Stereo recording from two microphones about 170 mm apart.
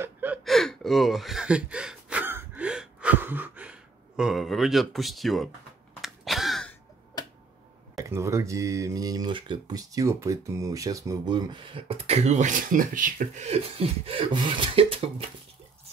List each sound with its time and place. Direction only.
0.0 s gasp: 10° right (ahead or behind)
0.5 s gasp: centre (ahead or behind)
4.2 s speech: centre (ahead or behind)
5.9 s a sound: centre (ahead or behind)
8.0 s speech: 15° right (ahead or behind); by 15.2 s 35° right (ahead or behind)